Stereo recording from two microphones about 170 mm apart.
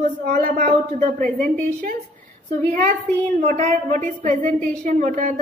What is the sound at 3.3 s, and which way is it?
A woman's voice, 50° right (ahead or behind).